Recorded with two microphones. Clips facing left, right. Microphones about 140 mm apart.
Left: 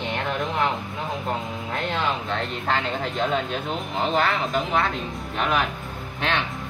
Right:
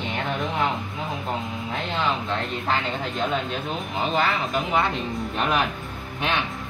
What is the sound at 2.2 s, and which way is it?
Speech, centre (ahead or behind).